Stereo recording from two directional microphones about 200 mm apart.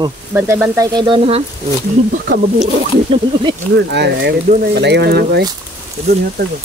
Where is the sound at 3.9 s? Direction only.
60° right (ahead or behind).